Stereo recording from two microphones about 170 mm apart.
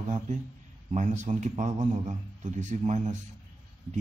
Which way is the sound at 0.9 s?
45° right (ahead or behind).